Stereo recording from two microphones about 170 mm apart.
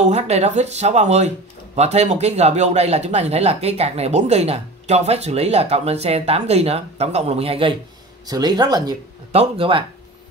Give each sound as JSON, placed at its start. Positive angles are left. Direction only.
{"t": 0.0, "sound": "speech", "side_deg": -40}
{"t": 9.3, "sound": "speech", "side_deg": -35}